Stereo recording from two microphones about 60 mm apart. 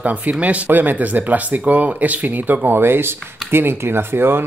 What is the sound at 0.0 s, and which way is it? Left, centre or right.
Speech, right.